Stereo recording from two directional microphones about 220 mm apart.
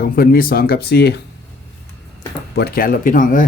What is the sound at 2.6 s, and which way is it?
Speech, 45° left (ahead or behind).